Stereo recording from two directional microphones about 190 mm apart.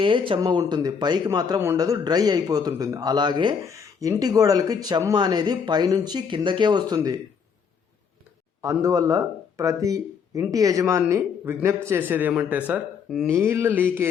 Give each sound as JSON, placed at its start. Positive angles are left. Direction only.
{"t": 0.0, "sound": "speech", "side_deg": -25}
{"t": 8.6, "sound": "speech", "side_deg": -15}